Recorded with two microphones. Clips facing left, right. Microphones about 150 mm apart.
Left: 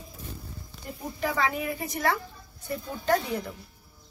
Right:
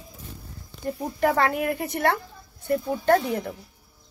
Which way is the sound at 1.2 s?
60° right (ahead or behind).